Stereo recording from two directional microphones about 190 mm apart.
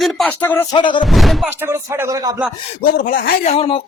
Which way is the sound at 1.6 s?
15° right (ahead or behind).